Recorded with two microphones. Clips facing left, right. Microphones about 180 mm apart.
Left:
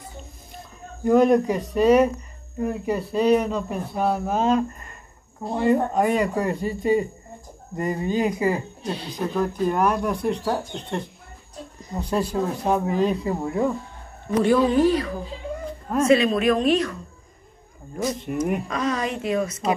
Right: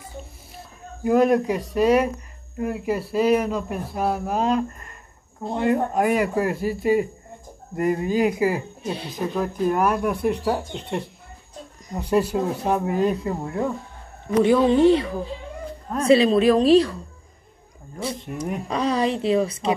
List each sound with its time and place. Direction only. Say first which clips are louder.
1.0 s speech: left 1 dB; centre (ahead or behind)
14.7 s a woman's voice: right 3 dB; 25° right (ahead or behind)
18.7 s a woman's voice: right 3 dB; 35° right (ahead or behind)